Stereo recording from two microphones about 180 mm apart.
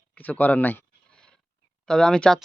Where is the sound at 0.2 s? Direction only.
10° left (ahead or behind).